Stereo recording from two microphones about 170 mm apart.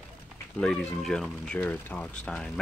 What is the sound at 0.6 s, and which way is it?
Speech, 5° left (ahead or behind).